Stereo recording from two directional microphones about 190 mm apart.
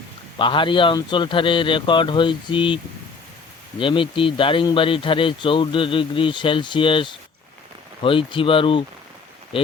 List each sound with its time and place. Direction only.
0.3 s speech: 25° left (ahead or behind)